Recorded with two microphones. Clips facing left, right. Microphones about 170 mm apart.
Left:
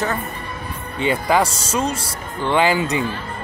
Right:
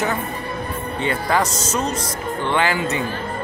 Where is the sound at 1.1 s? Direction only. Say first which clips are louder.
Left 3 dB; 15° left (ahead or behind).